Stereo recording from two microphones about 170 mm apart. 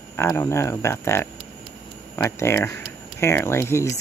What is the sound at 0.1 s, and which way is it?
Speech, 15° left (ahead or behind).